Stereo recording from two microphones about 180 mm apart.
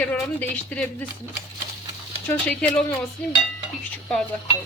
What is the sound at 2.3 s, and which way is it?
Speech, 10° left (ahead or behind).